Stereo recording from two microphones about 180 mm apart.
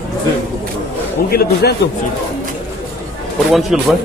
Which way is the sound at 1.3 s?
60° left (ahead or behind).